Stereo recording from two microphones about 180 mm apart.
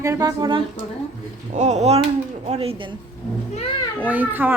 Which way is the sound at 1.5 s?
40° right (ahead or behind).